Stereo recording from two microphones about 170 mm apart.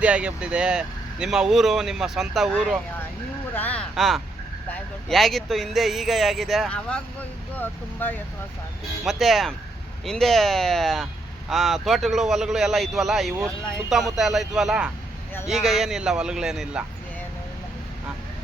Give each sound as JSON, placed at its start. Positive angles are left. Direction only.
{"t": 0.0, "sound": "speech", "side_deg": -5}
{"t": 3.5, "sound": "a sound", "side_deg": 10}
{"t": 3.9, "sound": "speech", "side_deg": 0}
{"t": 9.0, "sound": "speech", "side_deg": 0}